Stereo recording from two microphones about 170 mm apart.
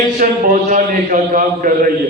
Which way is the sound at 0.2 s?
50° right (ahead or behind).